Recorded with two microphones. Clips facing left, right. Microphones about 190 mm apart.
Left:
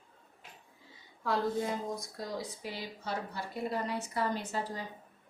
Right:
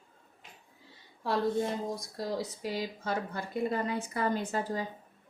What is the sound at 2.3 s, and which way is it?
Speech, 40° right (ahead or behind).